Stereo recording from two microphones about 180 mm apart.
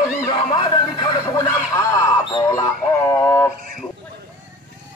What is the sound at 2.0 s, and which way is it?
Music, 20° left (ahead or behind).